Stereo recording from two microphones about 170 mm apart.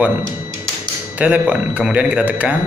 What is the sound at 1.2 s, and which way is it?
A man's voice, 10° right (ahead or behind).